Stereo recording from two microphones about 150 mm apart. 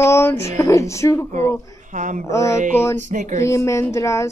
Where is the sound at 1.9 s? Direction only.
55° right (ahead or behind).